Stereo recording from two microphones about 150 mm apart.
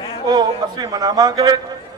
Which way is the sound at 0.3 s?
25° right (ahead or behind).